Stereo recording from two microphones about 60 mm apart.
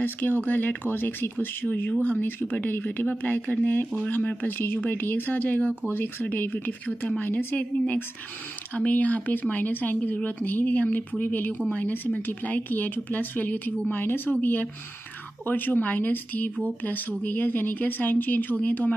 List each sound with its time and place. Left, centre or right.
0.0 s speech: left
8.7 s speech: left